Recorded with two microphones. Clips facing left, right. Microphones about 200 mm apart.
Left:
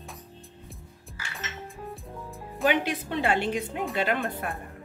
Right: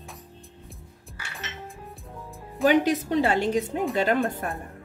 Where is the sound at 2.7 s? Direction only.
40° right (ahead or behind).